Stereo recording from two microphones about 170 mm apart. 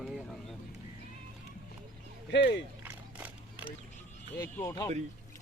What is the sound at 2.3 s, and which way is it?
Speech, 90° left.